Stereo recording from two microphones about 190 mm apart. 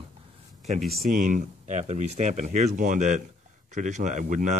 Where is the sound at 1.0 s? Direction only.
45° right (ahead or behind).